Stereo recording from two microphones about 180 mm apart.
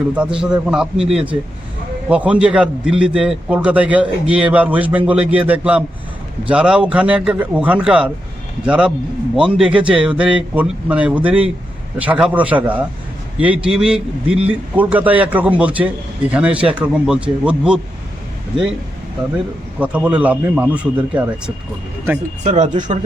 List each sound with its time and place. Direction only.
0.1 s a man's voice: 5° right (ahead or behind)
19.8 s a man's voice: 5° right (ahead or behind)
22.4 s speech: 40° right (ahead or behind)